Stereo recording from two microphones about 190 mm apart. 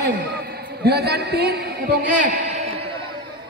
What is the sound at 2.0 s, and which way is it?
Speech, 40° right (ahead or behind).